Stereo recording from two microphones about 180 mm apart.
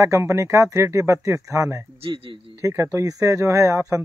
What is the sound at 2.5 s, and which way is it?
Speech, 15° right (ahead or behind).